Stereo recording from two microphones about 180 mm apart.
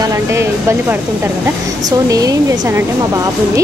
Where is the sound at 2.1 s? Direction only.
20° right (ahead or behind).